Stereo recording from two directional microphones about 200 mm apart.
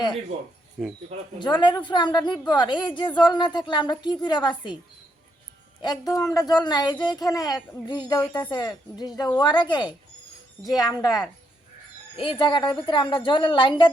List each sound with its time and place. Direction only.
0.8 s speech: centre (ahead or behind)
1.4 s a woman's voice: 20° left (ahead or behind)
5.8 s a woman's voice: 20° left (ahead or behind)